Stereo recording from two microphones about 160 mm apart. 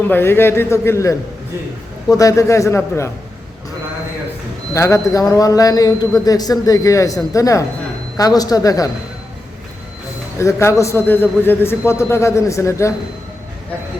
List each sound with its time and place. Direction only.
0.1 s a man's voice: 15° left (ahead or behind)
4.7 s a man's voice: 20° left (ahead or behind)
10.3 s a man's voice: 20° left (ahead or behind)